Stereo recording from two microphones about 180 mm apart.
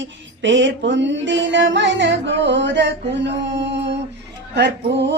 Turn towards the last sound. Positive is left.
turn(degrees=-75)  # may be behind; listen again after turning